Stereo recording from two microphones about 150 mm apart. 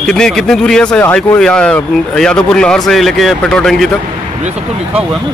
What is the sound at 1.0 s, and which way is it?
Speech, 15° left (ahead or behind).